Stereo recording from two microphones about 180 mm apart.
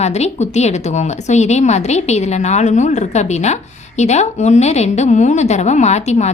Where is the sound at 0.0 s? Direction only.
35° left (ahead or behind).